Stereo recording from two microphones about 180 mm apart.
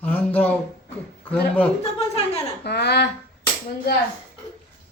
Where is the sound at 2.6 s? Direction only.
65° left (ahead or behind).